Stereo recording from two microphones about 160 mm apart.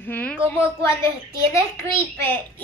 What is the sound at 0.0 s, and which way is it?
Speech, 10° left (ahead or behind).